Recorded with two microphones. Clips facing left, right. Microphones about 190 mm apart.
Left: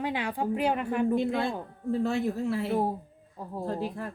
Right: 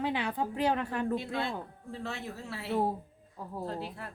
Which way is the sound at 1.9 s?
50° left (ahead or behind).